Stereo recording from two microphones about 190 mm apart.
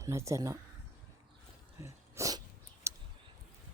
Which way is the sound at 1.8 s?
15° right (ahead or behind).